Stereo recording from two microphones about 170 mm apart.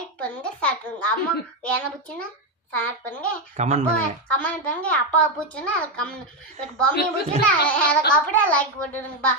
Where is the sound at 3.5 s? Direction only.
40° right (ahead or behind).